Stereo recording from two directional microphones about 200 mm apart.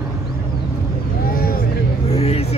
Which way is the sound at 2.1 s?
30° left (ahead or behind).